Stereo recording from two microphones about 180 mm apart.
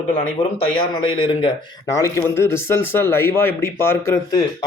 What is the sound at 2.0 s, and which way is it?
Speech, 15° left (ahead or behind).